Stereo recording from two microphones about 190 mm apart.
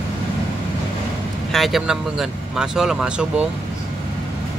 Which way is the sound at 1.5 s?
Centre (ahead or behind).